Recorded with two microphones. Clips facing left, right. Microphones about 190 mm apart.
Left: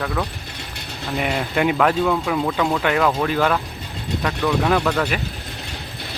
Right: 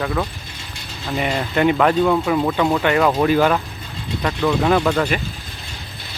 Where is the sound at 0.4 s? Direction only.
65° left (ahead or behind).